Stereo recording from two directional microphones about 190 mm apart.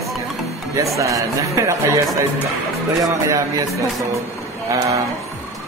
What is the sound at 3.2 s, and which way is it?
Speech, 15° right (ahead or behind).